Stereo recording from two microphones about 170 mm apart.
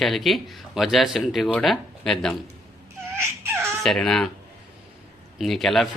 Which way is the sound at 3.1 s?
15° right (ahead or behind).